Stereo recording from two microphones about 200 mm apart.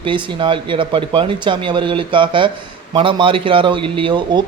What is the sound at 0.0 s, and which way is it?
A man's voice, 25° right (ahead or behind).